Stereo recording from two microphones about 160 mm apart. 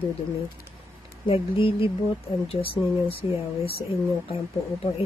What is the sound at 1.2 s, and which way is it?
Speech, 35° left (ahead or behind).